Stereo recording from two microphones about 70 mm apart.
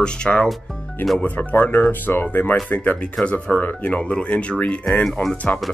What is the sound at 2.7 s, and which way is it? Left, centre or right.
Speech, centre.